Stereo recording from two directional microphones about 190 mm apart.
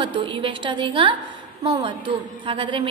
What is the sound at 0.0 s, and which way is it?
A woman's voice, 25° right (ahead or behind).